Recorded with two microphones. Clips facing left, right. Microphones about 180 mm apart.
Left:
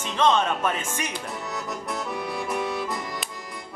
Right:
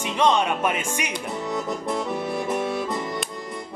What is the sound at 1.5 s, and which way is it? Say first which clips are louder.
Accordion: right 7 dB; 25° right (ahead or behind).